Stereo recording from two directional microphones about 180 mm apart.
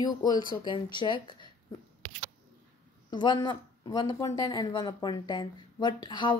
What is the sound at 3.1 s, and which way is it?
Speech, 25° left (ahead or behind).